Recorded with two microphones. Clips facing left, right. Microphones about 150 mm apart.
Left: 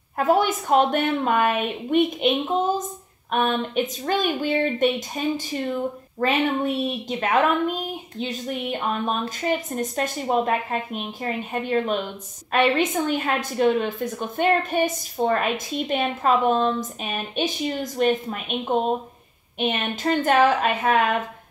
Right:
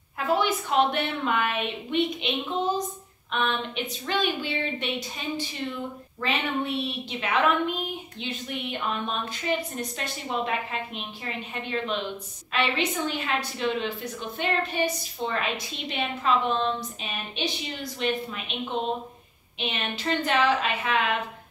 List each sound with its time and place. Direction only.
0.2 s a woman's voice: 45° left (ahead or behind)